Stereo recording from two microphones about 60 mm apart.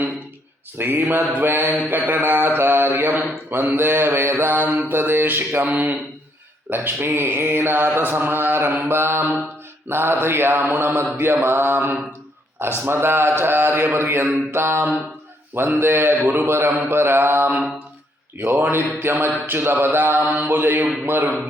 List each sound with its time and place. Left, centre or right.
0.8 s mantra: right
5.6 s speech: right
6.7 s mantra: right